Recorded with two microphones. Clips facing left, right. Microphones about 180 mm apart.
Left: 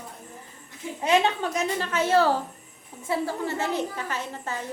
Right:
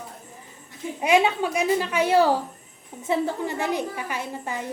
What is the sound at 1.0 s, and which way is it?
A woman's voice, 10° right (ahead or behind).